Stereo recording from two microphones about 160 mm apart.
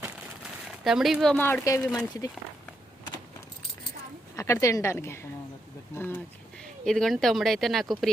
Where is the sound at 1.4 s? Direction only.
15° left (ahead or behind).